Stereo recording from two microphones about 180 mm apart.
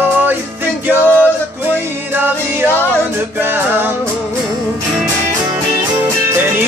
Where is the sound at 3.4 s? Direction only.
10° right (ahead or behind).